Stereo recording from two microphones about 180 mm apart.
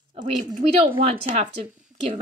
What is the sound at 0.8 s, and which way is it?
Speech, 30° right (ahead or behind).